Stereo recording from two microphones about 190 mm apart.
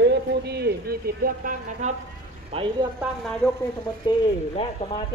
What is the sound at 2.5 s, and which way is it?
Speech, 25° right (ahead or behind).